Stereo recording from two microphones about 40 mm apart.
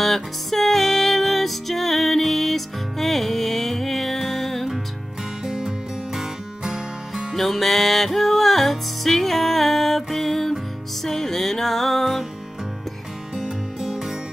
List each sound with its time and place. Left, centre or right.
0.0 s music: centre
5.4 s music: centre
7.3 s music: centre
13.4 s music: centre